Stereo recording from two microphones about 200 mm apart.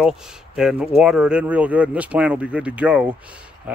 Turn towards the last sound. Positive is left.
turn(degrees=-5)  # may be behind; listen again after turning